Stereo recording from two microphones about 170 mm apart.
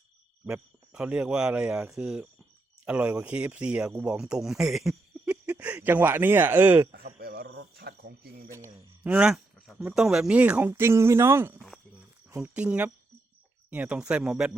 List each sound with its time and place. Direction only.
0.4 s speech: 5° right (ahead or behind)
6.9 s cricket: 65° right (ahead or behind)
8.4 s speech: 15° right (ahead or behind)